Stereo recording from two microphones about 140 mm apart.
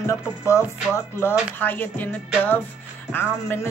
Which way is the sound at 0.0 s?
20° left (ahead or behind).